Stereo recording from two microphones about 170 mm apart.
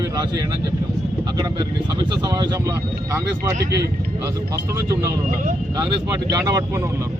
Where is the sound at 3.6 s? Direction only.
75° right (ahead or behind).